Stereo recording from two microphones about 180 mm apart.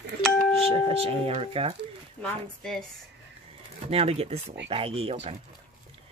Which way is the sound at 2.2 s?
5° left (ahead or behind).